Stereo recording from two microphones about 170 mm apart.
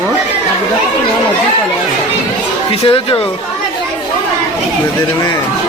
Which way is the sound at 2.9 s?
30° left (ahead or behind).